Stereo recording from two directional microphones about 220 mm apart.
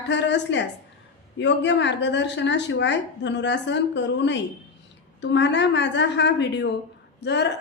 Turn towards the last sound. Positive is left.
turn(degrees=50)  # may be behind; listen again after turning